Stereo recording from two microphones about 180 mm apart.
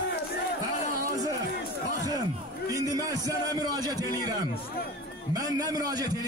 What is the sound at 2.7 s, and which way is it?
A man's voice, 20° right (ahead or behind).